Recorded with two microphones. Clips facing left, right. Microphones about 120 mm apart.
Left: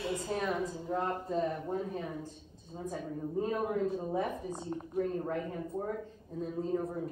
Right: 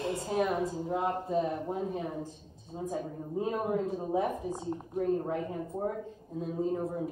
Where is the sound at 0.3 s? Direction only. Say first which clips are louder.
Right 6 dB; 10° right (ahead or behind).